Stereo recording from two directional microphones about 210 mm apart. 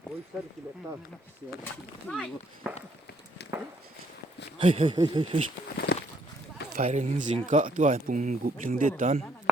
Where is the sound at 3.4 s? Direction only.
50° left (ahead or behind).